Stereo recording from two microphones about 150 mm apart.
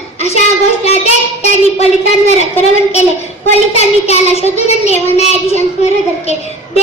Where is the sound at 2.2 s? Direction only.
45° left (ahead or behind).